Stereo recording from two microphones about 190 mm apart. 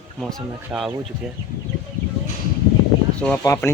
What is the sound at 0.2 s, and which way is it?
Speech, centre (ahead or behind).